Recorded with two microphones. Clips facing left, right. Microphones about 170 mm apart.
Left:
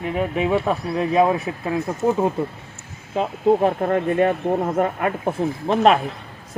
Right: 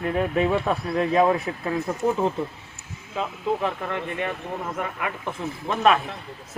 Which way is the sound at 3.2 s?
40° left (ahead or behind).